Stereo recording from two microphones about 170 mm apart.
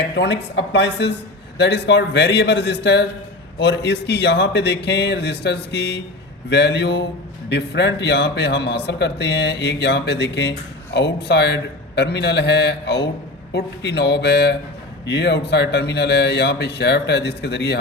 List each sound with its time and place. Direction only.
0.2 s speech: 90° left
3.6 s speech: 90° left